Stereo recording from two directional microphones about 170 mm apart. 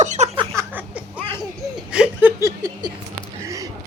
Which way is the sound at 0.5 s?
10° right (ahead or behind).